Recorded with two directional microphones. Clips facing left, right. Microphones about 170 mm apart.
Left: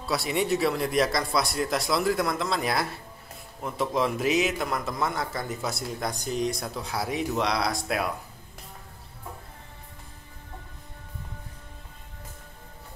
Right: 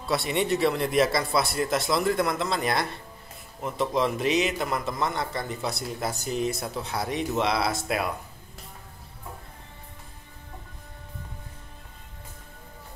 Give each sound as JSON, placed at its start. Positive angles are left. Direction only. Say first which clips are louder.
{"t": 0.0, "sound": "a man's voice", "louder": "right 1 dB", "side_deg": 0}